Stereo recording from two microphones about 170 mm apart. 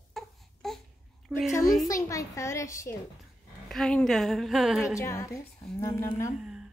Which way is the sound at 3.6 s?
5° left (ahead or behind).